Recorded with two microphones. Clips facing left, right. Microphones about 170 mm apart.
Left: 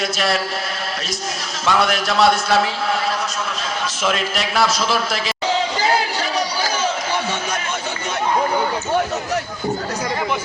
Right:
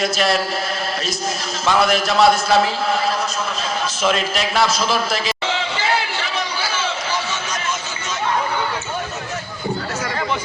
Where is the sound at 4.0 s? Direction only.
Centre (ahead or behind).